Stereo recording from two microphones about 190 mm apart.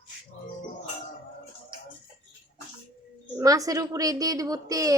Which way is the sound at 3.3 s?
20° right (ahead or behind).